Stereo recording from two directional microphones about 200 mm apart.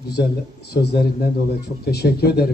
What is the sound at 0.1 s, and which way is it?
A man's voice, 55° left (ahead or behind).